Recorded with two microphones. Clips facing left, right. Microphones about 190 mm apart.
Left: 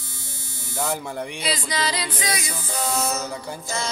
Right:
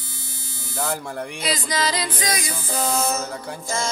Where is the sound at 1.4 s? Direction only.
45° right (ahead or behind).